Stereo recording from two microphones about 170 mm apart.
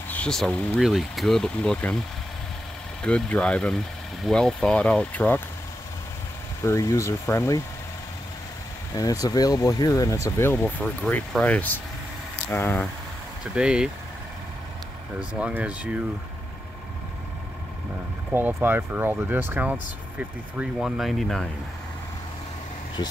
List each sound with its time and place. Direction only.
0.1 s speech: 5° left (ahead or behind)
3.0 s speech: 5° left (ahead or behind)
6.6 s speech: 15° left (ahead or behind)
8.9 s speech: 20° left (ahead or behind)
13.4 s speech: 5° right (ahead or behind)
15.1 s speech: 5° right (ahead or behind)
18.3 s speech: 15° right (ahead or behind); by 21.5 s centre (ahead or behind)